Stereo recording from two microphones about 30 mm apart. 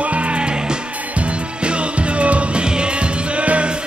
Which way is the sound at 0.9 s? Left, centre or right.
Right.